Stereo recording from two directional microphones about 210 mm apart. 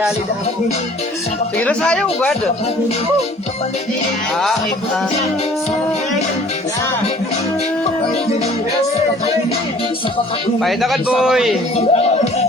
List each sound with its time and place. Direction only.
1.5 s speech: 5° left (ahead or behind)
10.6 s speech: centre (ahead or behind)
11.8 s music: 30° left (ahead or behind)